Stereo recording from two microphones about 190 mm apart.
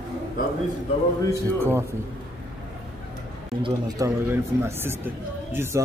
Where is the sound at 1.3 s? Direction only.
15° right (ahead or behind).